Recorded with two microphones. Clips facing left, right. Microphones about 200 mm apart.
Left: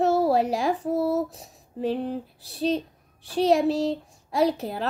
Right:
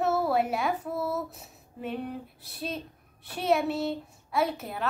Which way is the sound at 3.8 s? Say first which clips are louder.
Left 5 dB; 30° left (ahead or behind).